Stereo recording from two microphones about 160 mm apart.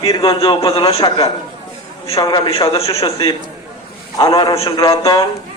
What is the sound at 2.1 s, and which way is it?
A man's voice, 30° left (ahead or behind).